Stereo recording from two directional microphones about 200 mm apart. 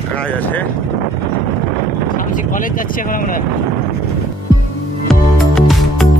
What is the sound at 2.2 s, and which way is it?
Speech, 40° left (ahead or behind).